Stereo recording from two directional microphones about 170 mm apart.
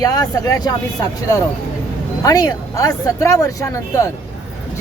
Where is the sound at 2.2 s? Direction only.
20° left (ahead or behind).